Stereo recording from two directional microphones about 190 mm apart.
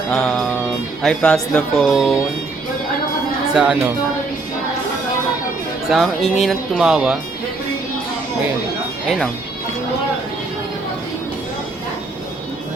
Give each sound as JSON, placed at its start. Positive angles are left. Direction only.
{"t": 0.1, "sound": "speech", "side_deg": 5}
{"t": 3.5, "sound": "speech", "side_deg": -5}
{"t": 5.9, "sound": "speech", "side_deg": 0}
{"t": 9.0, "sound": "speech", "side_deg": 5}